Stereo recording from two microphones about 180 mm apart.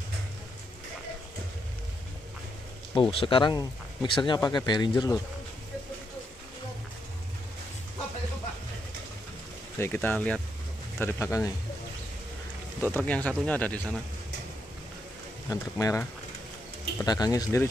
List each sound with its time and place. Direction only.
2.9 s speech: 30° left (ahead or behind)
9.8 s speech: 10° left (ahead or behind)
12.8 s speech: 10° left (ahead or behind)
15.5 s speech: 20° left (ahead or behind)